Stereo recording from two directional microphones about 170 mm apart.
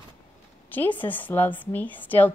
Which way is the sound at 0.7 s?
10° left (ahead or behind).